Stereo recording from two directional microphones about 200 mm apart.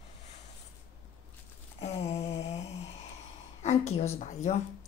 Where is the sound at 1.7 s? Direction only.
35° left (ahead or behind).